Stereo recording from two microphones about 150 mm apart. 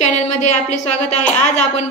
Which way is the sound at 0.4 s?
50° left (ahead or behind).